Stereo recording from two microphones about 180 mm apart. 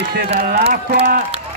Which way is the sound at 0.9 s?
60° right (ahead or behind).